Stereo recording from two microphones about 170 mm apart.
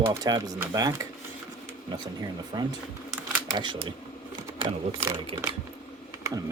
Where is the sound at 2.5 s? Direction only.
25° right (ahead or behind).